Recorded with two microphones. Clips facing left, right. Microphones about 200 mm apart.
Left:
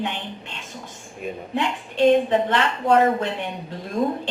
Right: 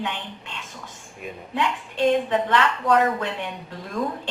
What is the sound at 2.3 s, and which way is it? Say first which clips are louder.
A woman's voice: left 1 dB; 25° left (ahead or behind).